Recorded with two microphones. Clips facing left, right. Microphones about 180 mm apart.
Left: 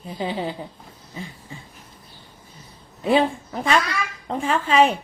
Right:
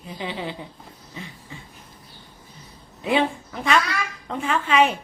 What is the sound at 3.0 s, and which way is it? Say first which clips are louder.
Speech: left 3 dB; 35° left (ahead or behind).